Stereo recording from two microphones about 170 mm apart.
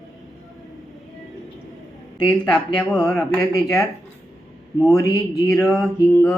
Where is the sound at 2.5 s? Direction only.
5° left (ahead or behind).